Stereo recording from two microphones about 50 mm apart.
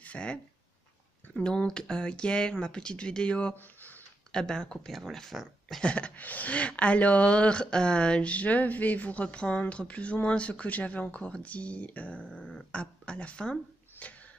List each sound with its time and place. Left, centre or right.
0.0 s speech: left
1.7 s speech: centre
3.5 s a sound: left
4.3 s speech: centre
5.8 s speech: left
12.3 s dog: centre
12.7 s speech: left
13.9 s a sound: left